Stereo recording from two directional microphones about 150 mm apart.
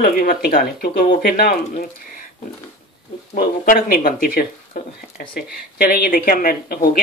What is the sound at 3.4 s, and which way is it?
Speech, 70° left (ahead or behind).